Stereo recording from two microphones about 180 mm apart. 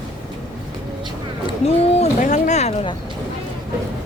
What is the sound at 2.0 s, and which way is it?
Speech, 40° left (ahead or behind).